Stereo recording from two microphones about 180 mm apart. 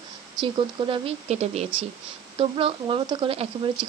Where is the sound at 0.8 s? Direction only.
30° right (ahead or behind).